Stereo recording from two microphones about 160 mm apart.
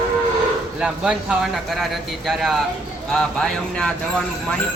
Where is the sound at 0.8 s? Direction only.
5° right (ahead or behind).